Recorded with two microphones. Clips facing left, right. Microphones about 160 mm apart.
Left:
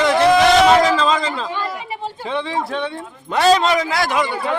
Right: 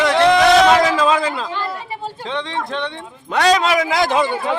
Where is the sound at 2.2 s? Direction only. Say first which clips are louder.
Left 3 dB; 5° left (ahead or behind).